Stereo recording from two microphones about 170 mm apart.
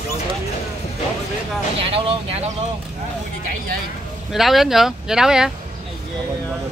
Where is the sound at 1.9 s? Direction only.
35° right (ahead or behind).